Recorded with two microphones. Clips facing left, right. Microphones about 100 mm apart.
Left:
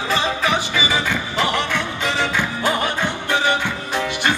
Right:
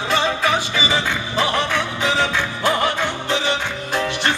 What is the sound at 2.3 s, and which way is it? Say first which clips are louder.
Music: right 1 dB; 20° left (ahead or behind).